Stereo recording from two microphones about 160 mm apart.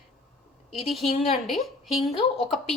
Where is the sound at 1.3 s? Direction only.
Centre (ahead or behind).